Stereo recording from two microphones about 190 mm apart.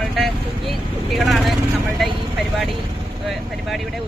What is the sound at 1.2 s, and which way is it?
Speech, centre (ahead or behind).